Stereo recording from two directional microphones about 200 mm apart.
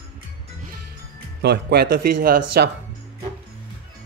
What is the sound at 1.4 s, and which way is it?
Speech, 55° right (ahead or behind).